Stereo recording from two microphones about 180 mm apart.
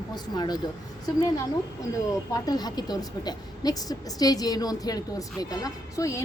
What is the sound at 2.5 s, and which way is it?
A woman's voice, 20° left (ahead or behind).